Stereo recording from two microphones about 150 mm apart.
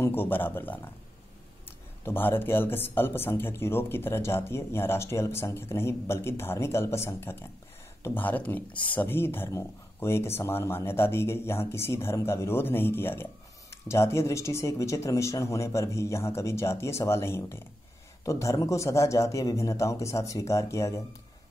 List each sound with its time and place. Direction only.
0.0 s speech: 15° left (ahead or behind)
2.0 s speech: 15° left (ahead or behind)